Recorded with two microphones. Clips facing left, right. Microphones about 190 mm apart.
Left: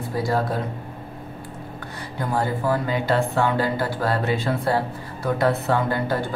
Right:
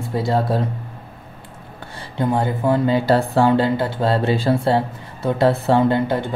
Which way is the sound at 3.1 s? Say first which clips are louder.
Right 4 dB; 35° right (ahead or behind).